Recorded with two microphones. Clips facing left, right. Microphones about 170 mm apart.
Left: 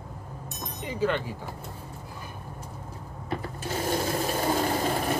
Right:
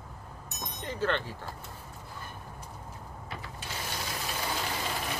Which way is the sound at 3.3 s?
45° left (ahead or behind).